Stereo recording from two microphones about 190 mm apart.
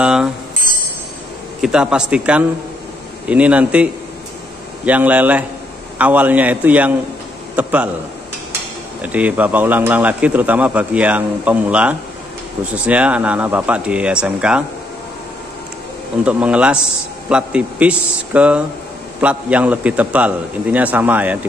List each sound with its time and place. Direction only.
0.0 s speech: 5° right (ahead or behind)
1.6 s speech: 5° right (ahead or behind)
9.0 s speech: 5° right (ahead or behind)
16.3 s speech: 5° right (ahead or behind)